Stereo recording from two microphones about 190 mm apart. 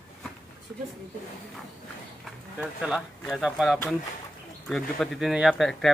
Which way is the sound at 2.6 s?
5° right (ahead or behind).